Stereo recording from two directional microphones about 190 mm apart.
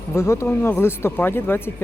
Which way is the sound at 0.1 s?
15° left (ahead or behind).